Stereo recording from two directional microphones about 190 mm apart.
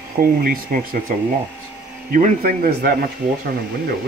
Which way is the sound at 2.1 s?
45° right (ahead or behind).